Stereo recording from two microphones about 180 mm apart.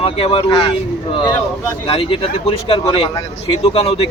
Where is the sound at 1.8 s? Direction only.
30° left (ahead or behind).